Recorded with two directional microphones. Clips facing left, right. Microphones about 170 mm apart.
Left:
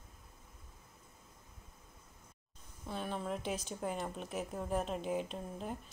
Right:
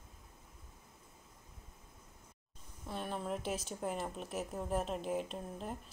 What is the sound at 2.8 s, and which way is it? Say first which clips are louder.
Speech: left 1 dB; centre (ahead or behind).